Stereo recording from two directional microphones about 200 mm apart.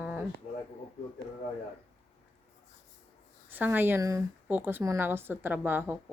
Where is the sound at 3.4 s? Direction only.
10° right (ahead or behind).